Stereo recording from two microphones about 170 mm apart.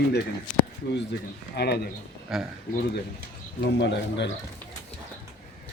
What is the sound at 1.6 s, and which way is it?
Speech, 75° left (ahead or behind).